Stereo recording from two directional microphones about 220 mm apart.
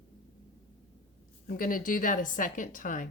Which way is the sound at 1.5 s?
40° left (ahead or behind).